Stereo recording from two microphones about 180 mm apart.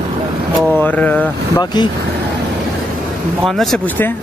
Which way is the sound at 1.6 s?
25° left (ahead or behind).